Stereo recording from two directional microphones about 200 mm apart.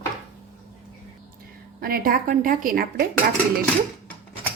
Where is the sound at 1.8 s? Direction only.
45° right (ahead or behind).